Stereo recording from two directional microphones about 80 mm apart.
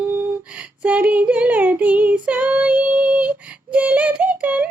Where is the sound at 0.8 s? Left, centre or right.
Centre.